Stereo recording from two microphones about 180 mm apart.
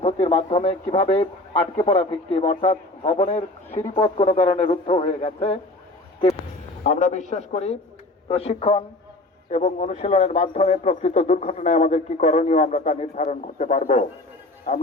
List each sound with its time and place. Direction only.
0.0 s speech: 35° left (ahead or behind)
6.8 s speech: 40° left (ahead or behind)